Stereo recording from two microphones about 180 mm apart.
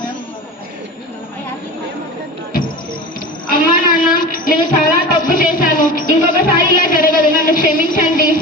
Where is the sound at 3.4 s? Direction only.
50° left (ahead or behind).